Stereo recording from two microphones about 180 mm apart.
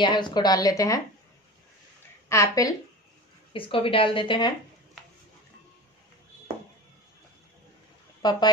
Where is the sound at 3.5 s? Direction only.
30° left (ahead or behind).